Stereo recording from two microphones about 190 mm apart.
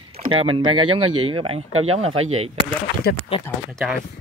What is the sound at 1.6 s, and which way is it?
Speech, 90° right.